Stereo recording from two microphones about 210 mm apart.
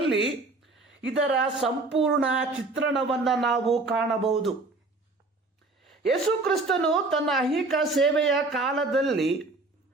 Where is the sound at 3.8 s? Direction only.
60° right (ahead or behind).